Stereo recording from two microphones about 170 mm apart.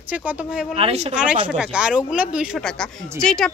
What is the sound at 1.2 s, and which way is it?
Speech, 5° right (ahead or behind).